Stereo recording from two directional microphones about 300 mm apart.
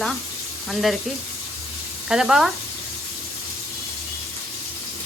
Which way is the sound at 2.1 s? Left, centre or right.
Centre.